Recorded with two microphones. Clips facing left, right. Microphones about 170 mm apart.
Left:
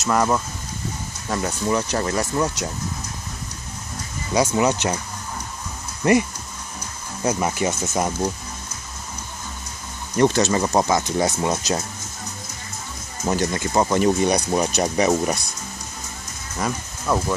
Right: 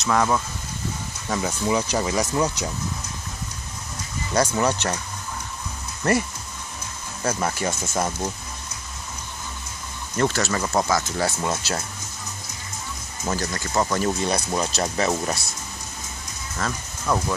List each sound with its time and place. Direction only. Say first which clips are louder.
0.0 s speech: left 1 dB; 5° left (ahead or behind)
1.3 s speech: left 1 dB; 5° right (ahead or behind)
4.3 s speech: left 2 dB; 15° left (ahead or behind)
6.0 s speech: left 4 dB; 10° left (ahead or behind)
7.2 s speech: left 3 dB; 15° left (ahead or behind)
10.1 s speech: left 5 dB; 20° left (ahead or behind)
13.2 s speech: left 5 dB; 20° left (ahead or behind)
16.5 s speech: left 3 dB; 15° left (ahead or behind)